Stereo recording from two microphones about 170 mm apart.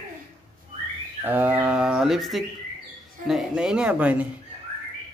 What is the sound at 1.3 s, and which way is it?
Speech, 10° right (ahead or behind).